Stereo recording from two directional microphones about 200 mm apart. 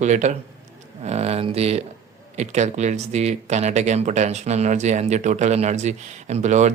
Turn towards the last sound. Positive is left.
turn(degrees=-35)  # may be behind; listen again after turning